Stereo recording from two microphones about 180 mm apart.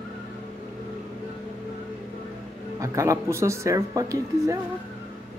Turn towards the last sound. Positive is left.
turn(degrees=-20)  # may be behind; listen again after turning